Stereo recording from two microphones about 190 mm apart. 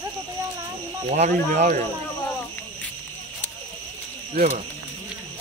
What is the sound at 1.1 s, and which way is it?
Speech, 35° right (ahead or behind).